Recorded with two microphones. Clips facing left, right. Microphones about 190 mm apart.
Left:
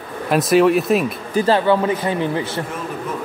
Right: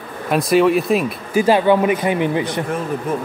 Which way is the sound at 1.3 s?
15° right (ahead or behind).